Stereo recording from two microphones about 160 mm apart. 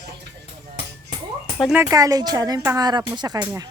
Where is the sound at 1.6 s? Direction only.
10° right (ahead or behind); by 3.4 s 25° right (ahead or behind).